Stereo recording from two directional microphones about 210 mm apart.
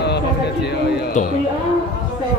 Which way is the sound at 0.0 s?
55° left (ahead or behind).